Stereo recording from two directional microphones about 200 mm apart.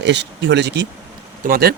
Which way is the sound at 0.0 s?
60° right (ahead or behind).